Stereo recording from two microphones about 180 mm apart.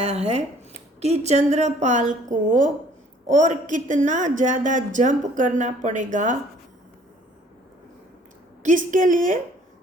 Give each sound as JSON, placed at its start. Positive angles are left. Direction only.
{"t": 0.0, "sound": "a woman's voice", "side_deg": -35}
{"t": 8.6, "sound": "speech", "side_deg": -45}